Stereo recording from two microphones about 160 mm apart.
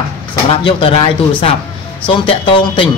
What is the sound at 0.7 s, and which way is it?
A man's voice, 35° left (ahead or behind).